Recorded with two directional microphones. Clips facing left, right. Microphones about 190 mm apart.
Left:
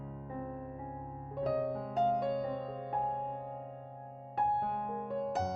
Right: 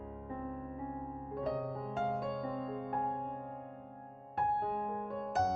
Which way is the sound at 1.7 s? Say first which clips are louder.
Left 5 dB; centre (ahead or behind).